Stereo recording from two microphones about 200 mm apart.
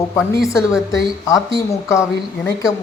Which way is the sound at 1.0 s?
15° left (ahead or behind).